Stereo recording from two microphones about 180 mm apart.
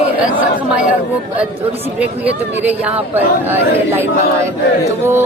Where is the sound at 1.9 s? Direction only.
10° right (ahead or behind).